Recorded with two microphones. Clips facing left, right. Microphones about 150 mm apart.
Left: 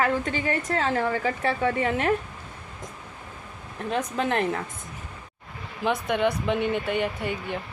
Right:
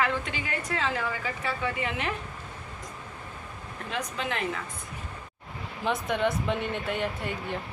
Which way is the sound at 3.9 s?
40° left (ahead or behind).